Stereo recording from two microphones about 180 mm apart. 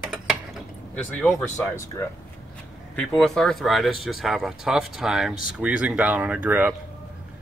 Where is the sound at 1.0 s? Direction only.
5° left (ahead or behind).